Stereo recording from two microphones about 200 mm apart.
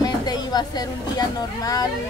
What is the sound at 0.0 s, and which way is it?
Speech, 20° left (ahead or behind).